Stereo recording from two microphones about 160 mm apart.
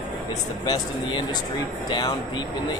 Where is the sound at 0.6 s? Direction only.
25° left (ahead or behind).